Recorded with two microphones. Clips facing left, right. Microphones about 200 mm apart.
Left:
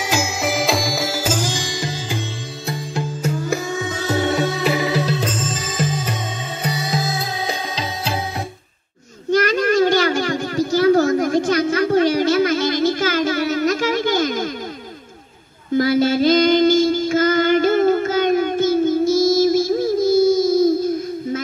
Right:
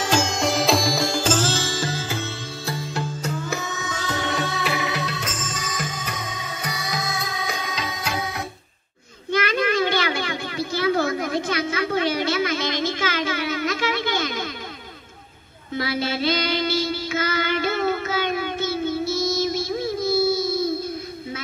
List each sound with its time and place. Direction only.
0.0 s music: 10° left (ahead or behind)
3.4 s music: 30° left (ahead or behind)
4.3 s music: 40° left (ahead or behind)
9.3 s a sound: 40° left (ahead or behind)
15.7 s child singing: 45° left (ahead or behind)